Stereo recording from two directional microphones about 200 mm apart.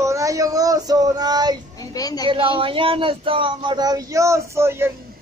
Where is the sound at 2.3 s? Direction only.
25° right (ahead or behind).